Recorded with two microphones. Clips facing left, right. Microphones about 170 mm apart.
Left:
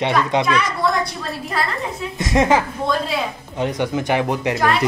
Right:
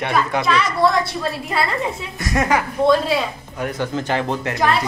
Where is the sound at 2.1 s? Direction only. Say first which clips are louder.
Left 4 dB; 20° left (ahead or behind).